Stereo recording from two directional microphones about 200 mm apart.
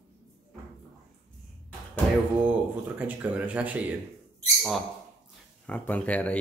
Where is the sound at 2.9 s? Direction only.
10° right (ahead or behind).